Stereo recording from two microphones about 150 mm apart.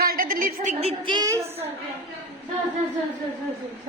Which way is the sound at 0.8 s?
35° right (ahead or behind).